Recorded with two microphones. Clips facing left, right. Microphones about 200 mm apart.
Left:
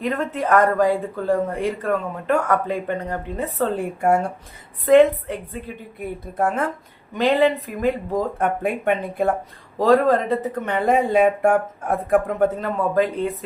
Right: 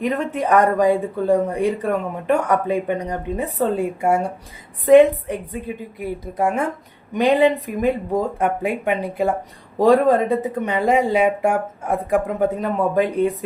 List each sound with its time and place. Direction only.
0.0 s speech: 15° right (ahead or behind)